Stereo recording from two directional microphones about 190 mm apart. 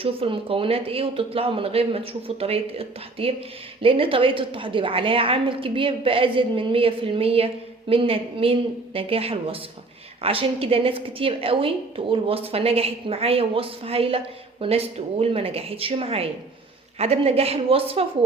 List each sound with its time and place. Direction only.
0.0 s a woman's voice: 30° right (ahead or behind)